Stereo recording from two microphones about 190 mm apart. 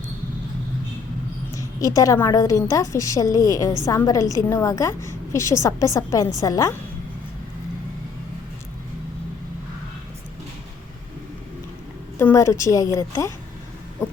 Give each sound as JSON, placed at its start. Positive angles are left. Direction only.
{"t": 1.5, "sound": "a woman's voice", "side_deg": 15}
{"t": 12.2, "sound": "a woman's voice", "side_deg": 15}